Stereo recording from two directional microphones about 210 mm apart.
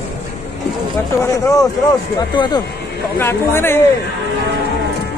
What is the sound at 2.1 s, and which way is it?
Speech, 20° left (ahead or behind).